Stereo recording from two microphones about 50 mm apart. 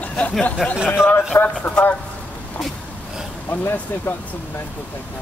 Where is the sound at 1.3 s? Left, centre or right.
Left.